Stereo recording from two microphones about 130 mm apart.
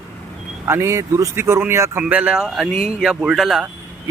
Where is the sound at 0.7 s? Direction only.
20° right (ahead or behind); by 3.7 s 5° right (ahead or behind).